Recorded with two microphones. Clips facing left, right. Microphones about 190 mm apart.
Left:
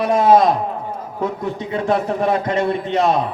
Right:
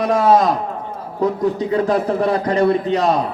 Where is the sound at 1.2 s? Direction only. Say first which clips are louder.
Right 6 dB; 35° right (ahead or behind).